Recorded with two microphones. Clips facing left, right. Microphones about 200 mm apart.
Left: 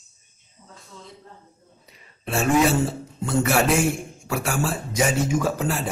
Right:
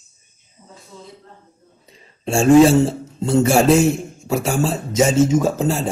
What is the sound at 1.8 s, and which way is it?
A man's voice, 30° right (ahead or behind).